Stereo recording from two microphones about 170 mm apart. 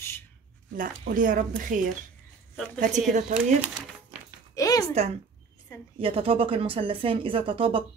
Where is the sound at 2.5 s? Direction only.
5° left (ahead or behind).